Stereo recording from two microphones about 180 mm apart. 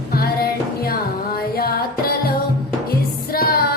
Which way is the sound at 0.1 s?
60° left (ahead or behind).